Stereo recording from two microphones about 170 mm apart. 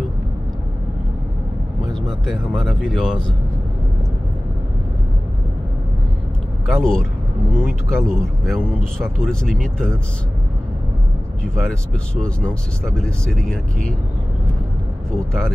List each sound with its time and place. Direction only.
1.9 s speech: centre (ahead or behind)
6.7 s speech: 5° left (ahead or behind)
11.4 s speech: centre (ahead or behind)
15.1 s speech: 5° left (ahead or behind)